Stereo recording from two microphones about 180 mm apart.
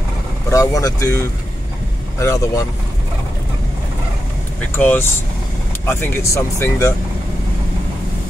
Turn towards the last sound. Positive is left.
turn(degrees=15)  # may be behind; listen again after turning